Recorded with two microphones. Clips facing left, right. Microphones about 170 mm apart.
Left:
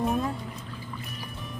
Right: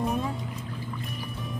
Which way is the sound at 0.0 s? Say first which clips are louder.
Left 1 dB; centre (ahead or behind).